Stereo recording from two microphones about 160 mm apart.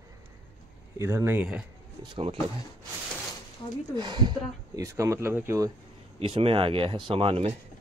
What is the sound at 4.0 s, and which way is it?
Speech, 25° right (ahead or behind).